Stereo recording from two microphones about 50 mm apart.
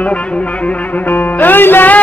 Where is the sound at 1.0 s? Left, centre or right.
Left.